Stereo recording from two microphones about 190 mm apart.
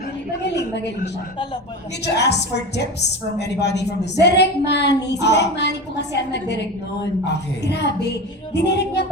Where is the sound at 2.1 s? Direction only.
65° left (ahead or behind).